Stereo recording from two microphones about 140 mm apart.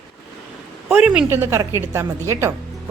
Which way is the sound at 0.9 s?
5° right (ahead or behind).